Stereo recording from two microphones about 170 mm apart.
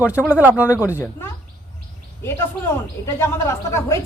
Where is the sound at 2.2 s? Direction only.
15° left (ahead or behind).